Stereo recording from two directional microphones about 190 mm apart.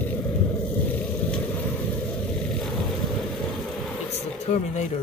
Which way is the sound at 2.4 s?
Centre (ahead or behind).